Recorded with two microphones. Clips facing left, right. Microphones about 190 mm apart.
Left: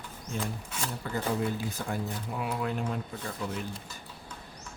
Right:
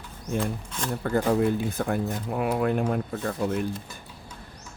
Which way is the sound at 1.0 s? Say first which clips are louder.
Right 8 dB; 55° right (ahead or behind).